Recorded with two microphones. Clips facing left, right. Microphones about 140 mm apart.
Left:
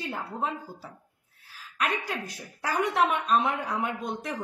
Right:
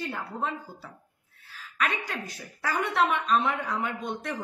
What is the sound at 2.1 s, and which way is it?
A woman's voice, 10° left (ahead or behind).